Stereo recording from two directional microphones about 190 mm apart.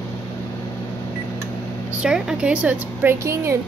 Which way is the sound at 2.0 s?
5° right (ahead or behind).